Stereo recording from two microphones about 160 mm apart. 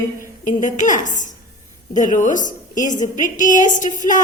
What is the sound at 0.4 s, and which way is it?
A woman's voice, 50° left (ahead or behind).